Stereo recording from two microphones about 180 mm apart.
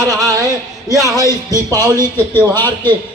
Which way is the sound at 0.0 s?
20° right (ahead or behind).